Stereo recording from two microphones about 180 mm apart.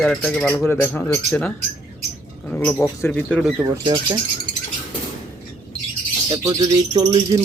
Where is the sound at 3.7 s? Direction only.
25° right (ahead or behind).